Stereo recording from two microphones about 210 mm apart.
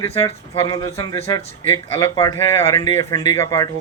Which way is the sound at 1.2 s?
30° left (ahead or behind).